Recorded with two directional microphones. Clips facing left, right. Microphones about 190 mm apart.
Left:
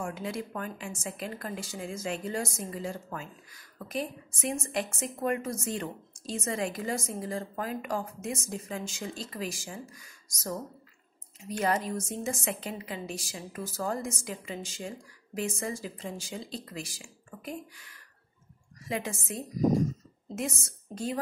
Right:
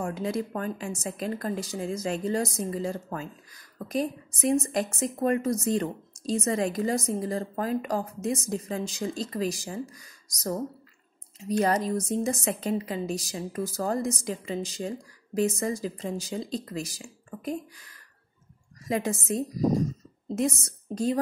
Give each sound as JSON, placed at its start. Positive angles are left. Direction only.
{"t": 0.0, "sound": "a woman's voice", "side_deg": -40}